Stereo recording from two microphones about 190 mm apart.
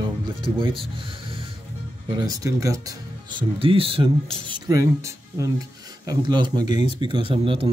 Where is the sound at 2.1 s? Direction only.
20° right (ahead or behind).